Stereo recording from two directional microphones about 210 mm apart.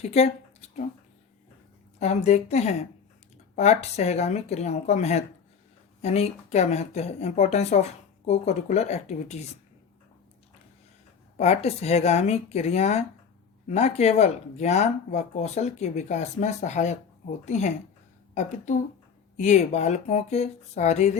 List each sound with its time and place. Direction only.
0.0 s speech: 30° left (ahead or behind)
2.0 s speech: 30° left (ahead or behind)
11.3 s speech: 30° left (ahead or behind)